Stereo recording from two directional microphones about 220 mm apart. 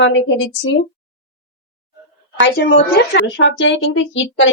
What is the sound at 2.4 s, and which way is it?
A woman's voice, 50° left (ahead or behind).